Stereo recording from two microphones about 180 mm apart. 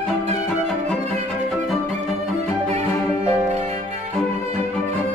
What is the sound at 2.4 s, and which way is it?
Music, 40° right (ahead or behind).